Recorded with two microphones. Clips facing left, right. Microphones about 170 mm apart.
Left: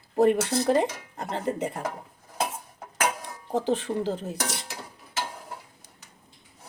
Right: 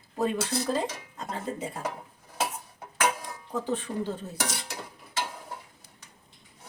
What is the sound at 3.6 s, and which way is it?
Speech, 90° left.